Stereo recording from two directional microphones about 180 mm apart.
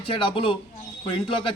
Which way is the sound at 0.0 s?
30° left (ahead or behind).